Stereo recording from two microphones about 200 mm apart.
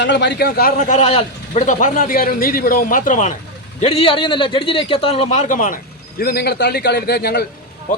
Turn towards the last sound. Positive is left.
turn(degrees=55)  # may be behind; listen again after turning